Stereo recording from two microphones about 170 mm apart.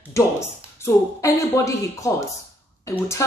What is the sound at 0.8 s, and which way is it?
Speech, 20° left (ahead or behind).